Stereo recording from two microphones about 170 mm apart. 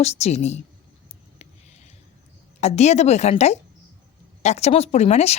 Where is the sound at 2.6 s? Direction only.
40° left (ahead or behind).